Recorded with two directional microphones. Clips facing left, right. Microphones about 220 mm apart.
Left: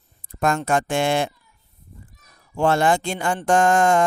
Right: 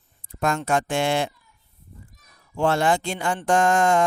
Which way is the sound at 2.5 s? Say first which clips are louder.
Left 2 dB; 50° left (ahead or behind).